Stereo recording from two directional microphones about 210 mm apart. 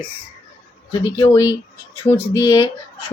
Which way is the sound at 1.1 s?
15° left (ahead or behind).